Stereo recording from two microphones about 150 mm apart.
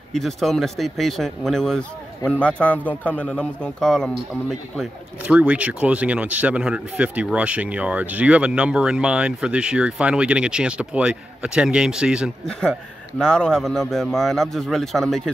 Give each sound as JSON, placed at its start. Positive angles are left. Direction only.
{"t": 0.1, "sound": "speech", "side_deg": 0}
{"t": 5.2, "sound": "speech", "side_deg": -10}
{"t": 13.2, "sound": "speech", "side_deg": 5}